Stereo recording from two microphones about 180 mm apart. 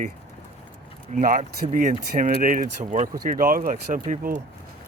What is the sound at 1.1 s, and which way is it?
Speech, 50° right (ahead or behind).